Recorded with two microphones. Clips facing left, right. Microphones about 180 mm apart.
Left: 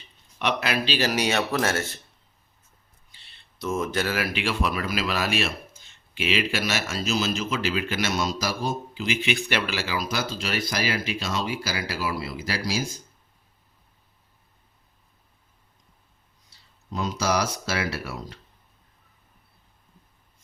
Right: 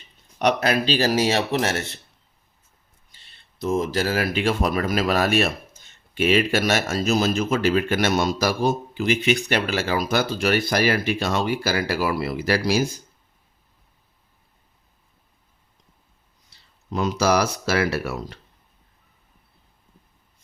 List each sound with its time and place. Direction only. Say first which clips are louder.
0.3 s speech: right 6 dB; 45° right (ahead or behind); by 1.8 s 25° right (ahead or behind)
3.2 s a man's voice: right 5 dB; 35° right (ahead or behind); by 12.8 s 60° right (ahead or behind)
16.9 s a man's voice: right 5 dB; 55° right (ahead or behind)